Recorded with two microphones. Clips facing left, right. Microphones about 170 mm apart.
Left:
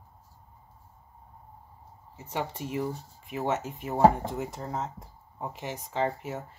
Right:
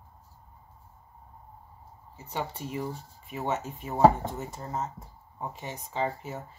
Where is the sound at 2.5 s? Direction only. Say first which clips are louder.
Left 2 dB; 60° left (ahead or behind).